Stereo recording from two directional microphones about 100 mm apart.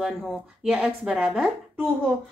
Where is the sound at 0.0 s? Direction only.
Centre (ahead or behind).